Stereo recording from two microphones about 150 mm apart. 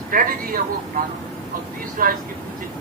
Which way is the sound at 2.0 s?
70° right (ahead or behind).